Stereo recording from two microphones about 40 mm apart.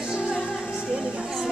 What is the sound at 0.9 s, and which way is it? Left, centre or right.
Music, centre.